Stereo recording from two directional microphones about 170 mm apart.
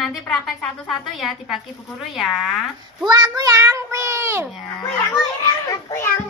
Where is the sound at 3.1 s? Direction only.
25° right (ahead or behind).